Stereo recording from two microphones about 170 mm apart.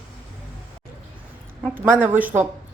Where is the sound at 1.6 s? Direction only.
10° right (ahead or behind).